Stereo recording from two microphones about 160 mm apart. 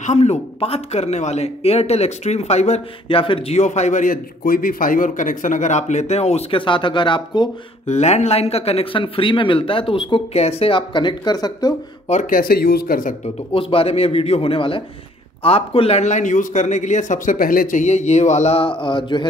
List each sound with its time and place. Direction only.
0.0 s speech: 45° left (ahead or behind)
7.8 s speech: 45° left (ahead or behind); by 11.7 s 25° left (ahead or behind)
12.1 s speech: 55° left (ahead or behind)
13.5 s speech: 35° left (ahead or behind)